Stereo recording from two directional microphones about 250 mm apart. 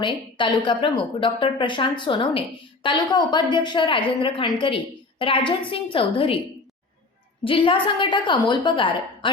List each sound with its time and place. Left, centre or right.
0.0 s a woman's voice: centre
7.4 s a woman's voice: left